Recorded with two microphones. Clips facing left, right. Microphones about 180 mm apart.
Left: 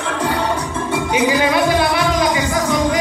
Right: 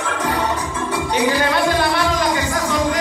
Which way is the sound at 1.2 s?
10° left (ahead or behind).